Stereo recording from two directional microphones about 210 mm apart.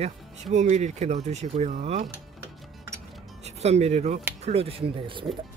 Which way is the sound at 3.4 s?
30° right (ahead or behind).